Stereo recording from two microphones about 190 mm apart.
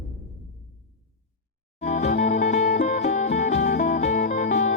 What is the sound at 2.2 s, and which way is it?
Music, 40° left (ahead or behind).